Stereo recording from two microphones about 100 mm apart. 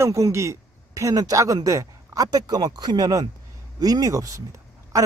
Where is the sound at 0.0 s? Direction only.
30° right (ahead or behind).